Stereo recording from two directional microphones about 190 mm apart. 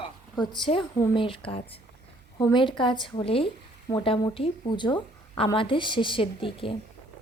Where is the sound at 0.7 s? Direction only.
30° left (ahead or behind).